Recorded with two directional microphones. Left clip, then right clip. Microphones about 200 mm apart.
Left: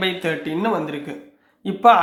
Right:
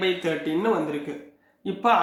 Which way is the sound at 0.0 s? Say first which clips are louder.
Left 2 dB; 45° left (ahead or behind).